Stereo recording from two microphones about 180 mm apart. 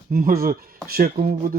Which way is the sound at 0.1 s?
50° right (ahead or behind).